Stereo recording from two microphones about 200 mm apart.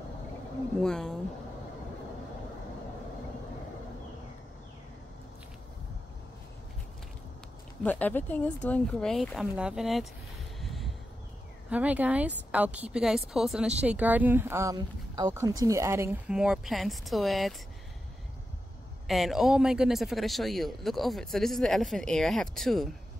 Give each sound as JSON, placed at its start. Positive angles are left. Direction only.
{"t": 0.7, "sound": "a man's voice", "side_deg": 5}
{"t": 7.8, "sound": "a man's voice", "side_deg": 10}
{"t": 10.6, "sound": "vehicle", "side_deg": 0}
{"t": 11.7, "sound": "a woman's voice", "side_deg": -5}
{"t": 19.0, "sound": "a man's voice", "side_deg": 0}